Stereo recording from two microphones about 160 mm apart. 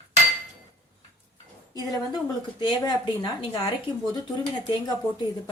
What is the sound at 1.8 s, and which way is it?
A woman's voice, 25° left (ahead or behind).